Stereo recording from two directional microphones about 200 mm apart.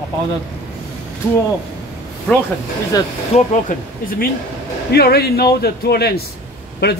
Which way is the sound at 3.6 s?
45° left (ahead or behind).